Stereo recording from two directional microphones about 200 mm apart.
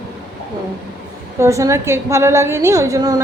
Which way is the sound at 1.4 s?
15° right (ahead or behind).